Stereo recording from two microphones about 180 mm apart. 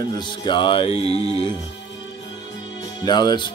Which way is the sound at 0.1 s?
25° left (ahead or behind).